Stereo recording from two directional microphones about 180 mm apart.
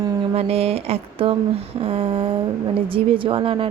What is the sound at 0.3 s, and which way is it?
A woman's voice, 35° right (ahead or behind).